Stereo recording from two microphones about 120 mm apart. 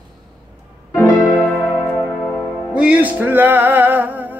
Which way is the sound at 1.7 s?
35° left (ahead or behind).